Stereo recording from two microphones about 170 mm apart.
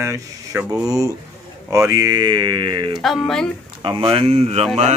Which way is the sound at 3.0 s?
Centre (ahead or behind).